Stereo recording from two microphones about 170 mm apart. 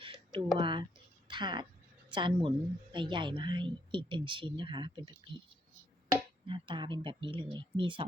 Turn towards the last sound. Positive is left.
turn(degrees=-30)  # may be behind; listen again after turning